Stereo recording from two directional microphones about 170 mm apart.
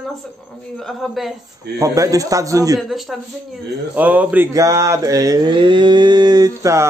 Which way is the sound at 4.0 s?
10° right (ahead or behind).